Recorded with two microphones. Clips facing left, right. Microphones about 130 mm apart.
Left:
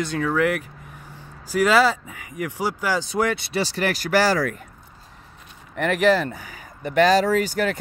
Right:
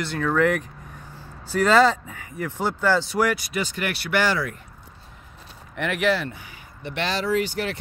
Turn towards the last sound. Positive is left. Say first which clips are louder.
# left 3 dB
turn(degrees=45)  # may be behind; listen again after turning